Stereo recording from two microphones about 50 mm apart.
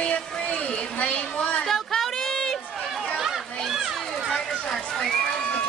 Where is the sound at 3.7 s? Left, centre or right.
Centre.